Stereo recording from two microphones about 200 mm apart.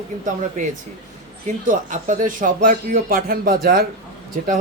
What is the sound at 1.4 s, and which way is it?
Speech, 40° right (ahead or behind).